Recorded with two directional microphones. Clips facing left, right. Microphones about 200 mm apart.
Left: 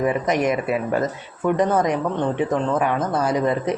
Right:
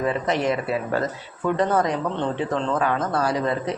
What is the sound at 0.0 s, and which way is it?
Speech, 15° left (ahead or behind).